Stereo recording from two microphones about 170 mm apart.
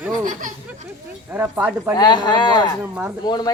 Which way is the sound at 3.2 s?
25° left (ahead or behind).